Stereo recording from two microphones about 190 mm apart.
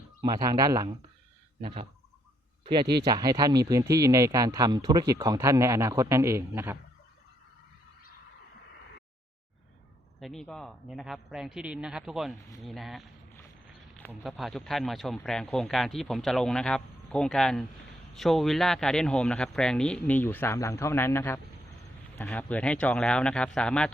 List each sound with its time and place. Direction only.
0.2 s speech: 20° right (ahead or behind)
1.6 s speech: 30° right (ahead or behind)
3.0 s speech: 20° right (ahead or behind)
10.2 s speech: centre (ahead or behind)
14.3 s speech: centre (ahead or behind)